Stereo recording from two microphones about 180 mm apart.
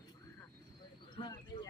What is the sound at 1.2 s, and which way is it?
Bird, 25° left (ahead or behind).